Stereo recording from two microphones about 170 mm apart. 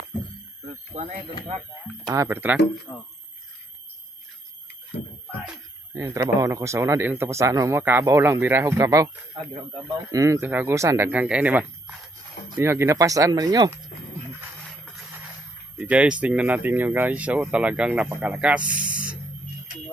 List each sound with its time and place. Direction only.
0.7 s speech: 45° right (ahead or behind)
2.0 s speech: 15° right (ahead or behind)
5.9 s speech: 20° right (ahead or behind)
15.8 s speech: 5° right (ahead or behind)
18.7 s a sound: 25° right (ahead or behind)